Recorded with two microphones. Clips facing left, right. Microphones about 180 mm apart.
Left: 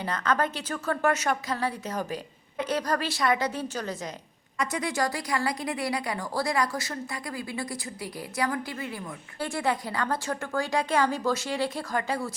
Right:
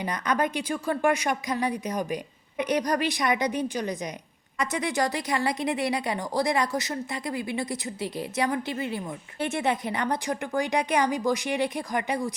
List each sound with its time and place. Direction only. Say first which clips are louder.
0.0 s a woman's voice: right 1 dB; 15° right (ahead or behind)